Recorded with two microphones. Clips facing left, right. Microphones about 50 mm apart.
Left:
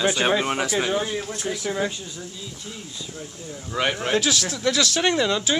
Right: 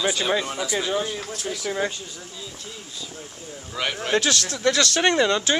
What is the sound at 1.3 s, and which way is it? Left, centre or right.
Speech, left.